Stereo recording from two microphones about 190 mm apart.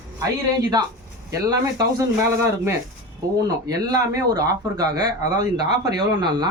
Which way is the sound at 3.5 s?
20° right (ahead or behind).